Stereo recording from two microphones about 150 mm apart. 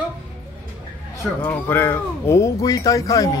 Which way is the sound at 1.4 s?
15° left (ahead or behind).